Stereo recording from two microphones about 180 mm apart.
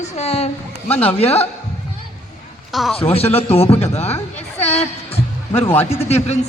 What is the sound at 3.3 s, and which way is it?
A man's voice, 35° left (ahead or behind).